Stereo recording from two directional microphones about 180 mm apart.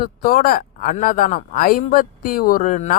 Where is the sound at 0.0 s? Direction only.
55° left (ahead or behind).